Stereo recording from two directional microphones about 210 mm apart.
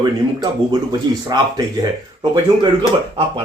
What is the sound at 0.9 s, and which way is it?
Speech, 20° right (ahead or behind).